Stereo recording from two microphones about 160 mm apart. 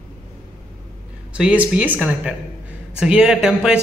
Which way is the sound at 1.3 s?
10° right (ahead or behind).